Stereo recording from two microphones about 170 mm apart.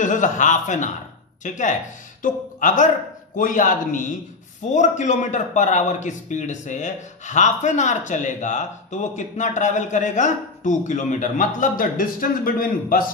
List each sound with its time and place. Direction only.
0.0 s a man's voice: 50° left (ahead or behind)